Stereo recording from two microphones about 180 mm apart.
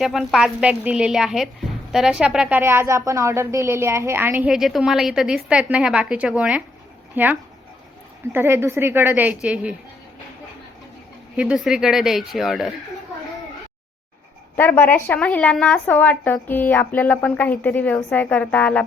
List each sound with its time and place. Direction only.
0.0 s a woman's voice: centre (ahead or behind)
11.3 s a woman's voice: 5° right (ahead or behind)
14.5 s a woman's voice: 10° left (ahead or behind)